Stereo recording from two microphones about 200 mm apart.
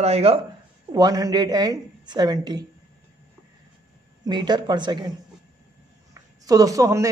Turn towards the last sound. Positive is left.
turn(degrees=-15)  # may be behind; listen again after turning